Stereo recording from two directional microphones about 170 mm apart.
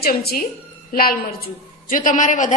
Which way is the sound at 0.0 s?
65° left (ahead or behind).